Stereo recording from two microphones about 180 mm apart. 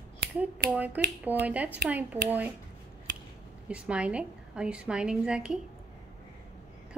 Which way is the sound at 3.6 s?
5° right (ahead or behind).